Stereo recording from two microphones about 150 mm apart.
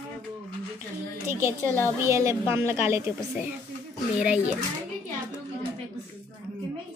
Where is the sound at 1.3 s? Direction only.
15° right (ahead or behind).